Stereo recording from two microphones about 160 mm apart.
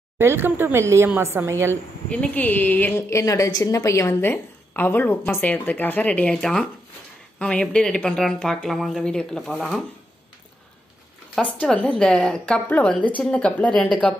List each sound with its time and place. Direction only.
0.2 s a woman's voice: 15° right (ahead or behind)
2.0 s a woman's voice: 10° left (ahead or behind)
11.3 s a woman's voice: 5° left (ahead or behind)